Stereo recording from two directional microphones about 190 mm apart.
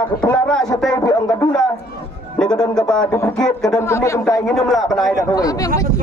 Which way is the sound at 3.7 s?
15° left (ahead or behind).